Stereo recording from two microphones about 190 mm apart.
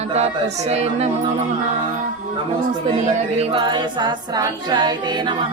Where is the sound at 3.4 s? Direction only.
30° right (ahead or behind).